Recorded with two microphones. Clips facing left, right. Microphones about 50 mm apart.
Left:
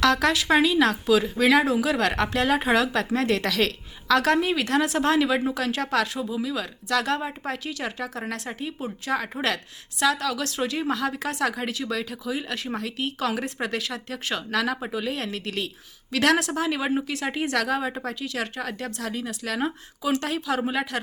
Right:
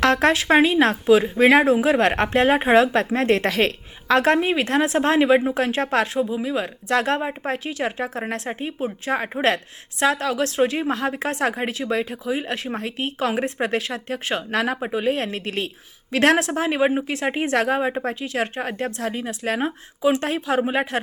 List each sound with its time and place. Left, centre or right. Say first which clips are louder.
0.0 s speech: right 3 dB; right